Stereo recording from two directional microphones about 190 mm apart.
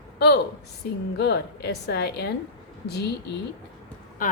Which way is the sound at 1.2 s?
60° left (ahead or behind).